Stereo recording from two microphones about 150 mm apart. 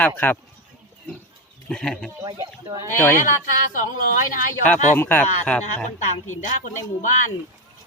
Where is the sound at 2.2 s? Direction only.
25° right (ahead or behind).